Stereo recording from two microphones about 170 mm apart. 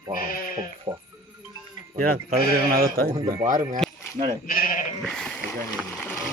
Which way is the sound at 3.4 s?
50° right (ahead or behind).